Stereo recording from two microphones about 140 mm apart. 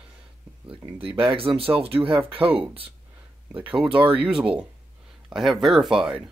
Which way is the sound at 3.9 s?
40° right (ahead or behind).